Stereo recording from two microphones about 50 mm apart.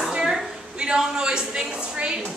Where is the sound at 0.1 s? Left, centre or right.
Centre.